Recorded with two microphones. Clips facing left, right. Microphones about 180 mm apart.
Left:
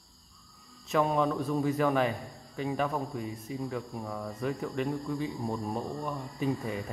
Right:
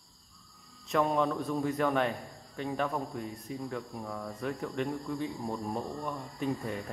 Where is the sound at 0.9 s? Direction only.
Centre (ahead or behind).